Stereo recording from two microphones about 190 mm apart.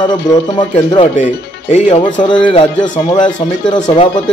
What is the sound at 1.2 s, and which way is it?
Speech, 40° left (ahead or behind).